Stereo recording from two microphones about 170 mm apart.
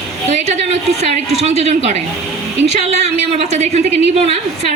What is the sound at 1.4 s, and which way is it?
A woman's voice, 40° right (ahead or behind).